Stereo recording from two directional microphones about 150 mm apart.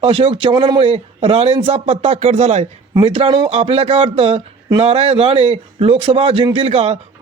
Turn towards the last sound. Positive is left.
turn(degrees=-40)  # may be behind; listen again after turning